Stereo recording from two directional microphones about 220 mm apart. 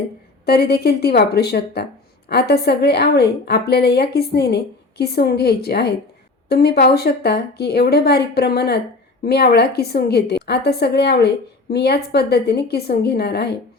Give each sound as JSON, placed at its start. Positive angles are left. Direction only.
{"t": 0.4, "sound": "a woman's voice", "side_deg": 45}